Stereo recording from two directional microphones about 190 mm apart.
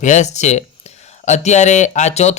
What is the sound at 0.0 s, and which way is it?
Speech, 40° left (ahead or behind).